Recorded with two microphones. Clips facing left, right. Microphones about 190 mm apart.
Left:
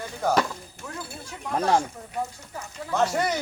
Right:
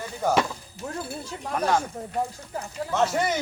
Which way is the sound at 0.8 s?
40° right (ahead or behind).